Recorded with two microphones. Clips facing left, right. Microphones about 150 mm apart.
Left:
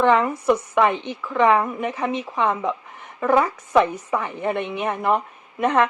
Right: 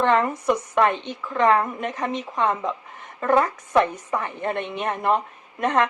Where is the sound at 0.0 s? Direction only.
10° left (ahead or behind).